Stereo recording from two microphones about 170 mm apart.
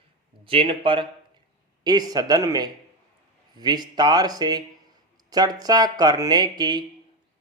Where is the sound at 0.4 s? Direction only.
30° right (ahead or behind).